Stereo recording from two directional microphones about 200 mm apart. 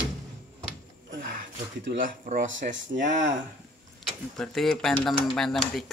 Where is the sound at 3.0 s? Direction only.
40° right (ahead or behind).